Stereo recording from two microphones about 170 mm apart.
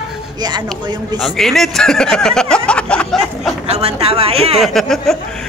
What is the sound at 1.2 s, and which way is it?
Speech, centre (ahead or behind).